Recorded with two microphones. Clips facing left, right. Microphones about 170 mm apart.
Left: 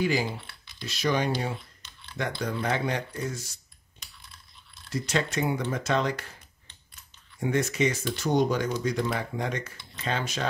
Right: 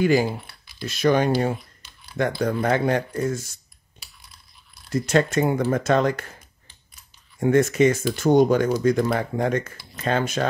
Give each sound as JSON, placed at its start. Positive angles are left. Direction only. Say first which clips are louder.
{"t": 0.0, "sound": "speech", "louder": "right 7 dB", "side_deg": -50}
{"t": 4.0, "sound": "coin", "louder": "even", "side_deg": -10}
{"t": 4.8, "sound": "speech", "louder": "right 8 dB", "side_deg": -50}
{"t": 7.3, "sound": "speech", "louder": "right 8 dB", "side_deg": -50}